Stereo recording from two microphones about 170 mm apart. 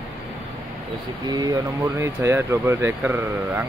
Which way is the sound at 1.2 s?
25° right (ahead or behind).